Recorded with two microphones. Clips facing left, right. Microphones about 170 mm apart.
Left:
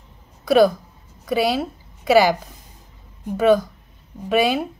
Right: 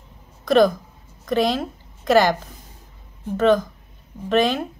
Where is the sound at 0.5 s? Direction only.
5° left (ahead or behind).